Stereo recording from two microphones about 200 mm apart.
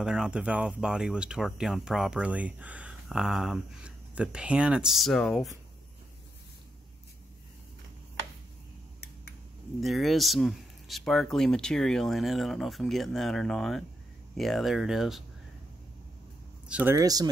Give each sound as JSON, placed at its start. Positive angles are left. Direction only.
{"t": 0.0, "sound": "speech", "side_deg": -5}
{"t": 9.8, "sound": "speech", "side_deg": 0}
{"t": 16.6, "sound": "speech", "side_deg": -10}